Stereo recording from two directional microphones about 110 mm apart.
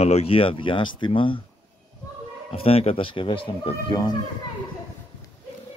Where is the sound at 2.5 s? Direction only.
60° left (ahead or behind).